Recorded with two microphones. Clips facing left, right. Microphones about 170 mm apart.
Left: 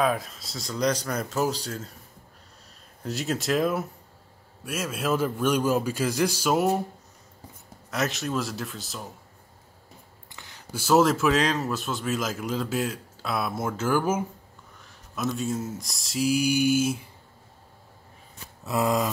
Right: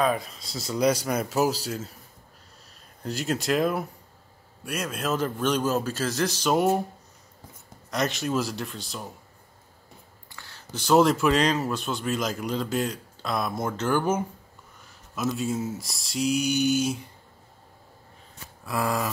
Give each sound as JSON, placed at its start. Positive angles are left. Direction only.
{"t": 0.0, "sound": "speech", "side_deg": 0}
{"t": 3.0, "sound": "a man's voice", "side_deg": 0}
{"t": 7.9, "sound": "a man's voice", "side_deg": 0}
{"t": 10.3, "sound": "a sound", "side_deg": 15}
{"t": 10.8, "sound": "a man's voice", "side_deg": 5}
{"t": 18.6, "sound": "a sound", "side_deg": 20}